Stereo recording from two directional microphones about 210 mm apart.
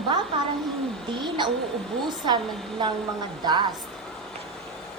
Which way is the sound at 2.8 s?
20° right (ahead or behind).